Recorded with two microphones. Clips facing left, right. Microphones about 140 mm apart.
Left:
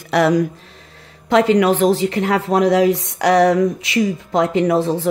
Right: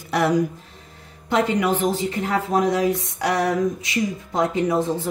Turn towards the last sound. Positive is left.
turn(degrees=85)